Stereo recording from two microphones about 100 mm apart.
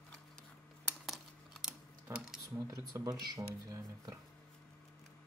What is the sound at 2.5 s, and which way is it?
Speech, 35° right (ahead or behind).